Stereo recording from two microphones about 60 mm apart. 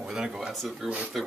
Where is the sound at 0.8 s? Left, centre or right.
Centre.